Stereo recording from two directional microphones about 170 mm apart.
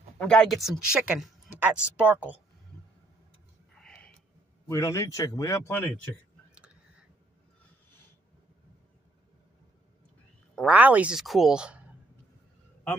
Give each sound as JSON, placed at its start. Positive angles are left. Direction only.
{"t": 0.2, "sound": "speech", "side_deg": 5}
{"t": 3.7, "sound": "whispering", "side_deg": 5}
{"t": 4.6, "sound": "a man's voice", "side_deg": 20}
{"t": 10.5, "sound": "speech", "side_deg": -5}